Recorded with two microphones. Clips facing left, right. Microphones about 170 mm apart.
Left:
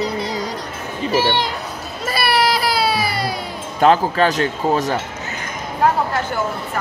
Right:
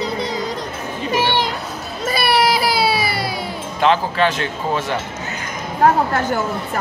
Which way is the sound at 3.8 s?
40° left (ahead or behind).